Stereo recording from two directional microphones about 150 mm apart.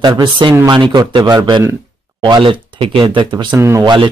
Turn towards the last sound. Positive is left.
turn(degrees=-30)  # may be behind; listen again after turning